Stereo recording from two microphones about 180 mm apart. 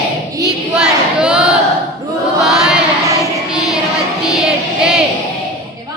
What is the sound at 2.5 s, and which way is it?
Chant, 5° right (ahead or behind).